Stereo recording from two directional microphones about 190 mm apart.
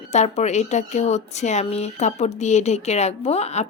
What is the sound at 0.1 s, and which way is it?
Speech, 35° left (ahead or behind).